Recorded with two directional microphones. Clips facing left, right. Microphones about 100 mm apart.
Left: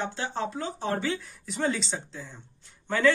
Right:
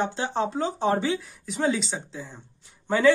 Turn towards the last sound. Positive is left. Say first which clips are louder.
# right 4 dB
turn(degrees=-15)  # may be behind; listen again after turning